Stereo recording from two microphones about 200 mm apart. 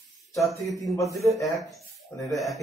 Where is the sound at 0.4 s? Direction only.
Centre (ahead or behind).